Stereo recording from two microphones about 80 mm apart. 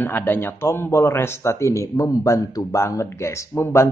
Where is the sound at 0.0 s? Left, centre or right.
Left.